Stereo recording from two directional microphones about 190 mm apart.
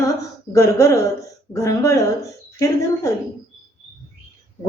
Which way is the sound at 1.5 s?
15° left (ahead or behind).